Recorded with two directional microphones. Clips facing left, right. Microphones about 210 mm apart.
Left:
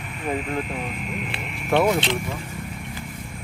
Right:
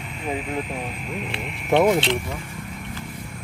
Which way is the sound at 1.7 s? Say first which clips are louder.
Right 2 dB; 20° right (ahead or behind).